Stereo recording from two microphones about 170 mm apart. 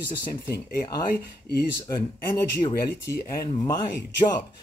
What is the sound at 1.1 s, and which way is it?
Speech, 65° left (ahead or behind).